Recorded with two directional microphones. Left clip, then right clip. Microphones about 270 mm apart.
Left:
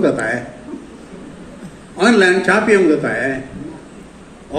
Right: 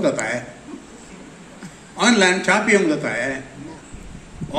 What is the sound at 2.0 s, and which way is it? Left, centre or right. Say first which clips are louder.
A man's voice: left 4 dB; centre.